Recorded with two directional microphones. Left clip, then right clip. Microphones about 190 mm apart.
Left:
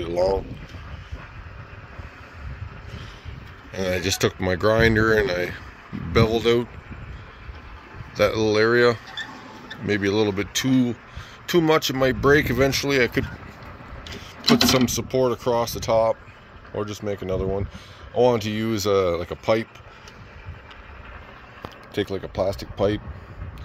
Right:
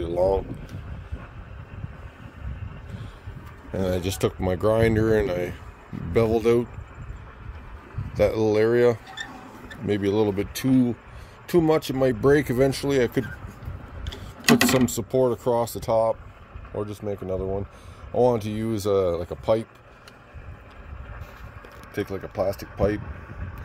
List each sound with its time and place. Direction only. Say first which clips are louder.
0.0 s speech: even; 10° right (ahead or behind)
3.8 s speech: left 3 dB; 5° right (ahead or behind)
8.2 s speech: left 1 dB; 15° right (ahead or behind)
14.9 s speech: left 1 dB; 25° right (ahead or behind); by 19.7 s centre (ahead or behind)
21.9 s speech: left 2 dB; 10° left (ahead or behind)